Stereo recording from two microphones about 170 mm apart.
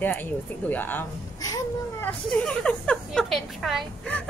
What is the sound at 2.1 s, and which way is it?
A woman's voice, 5° left (ahead or behind).